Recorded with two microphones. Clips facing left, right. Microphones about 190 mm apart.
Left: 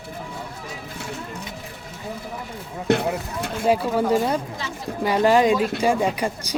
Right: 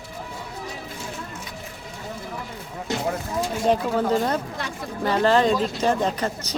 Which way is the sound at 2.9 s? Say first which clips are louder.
Left 8 dB; 60° left (ahead or behind).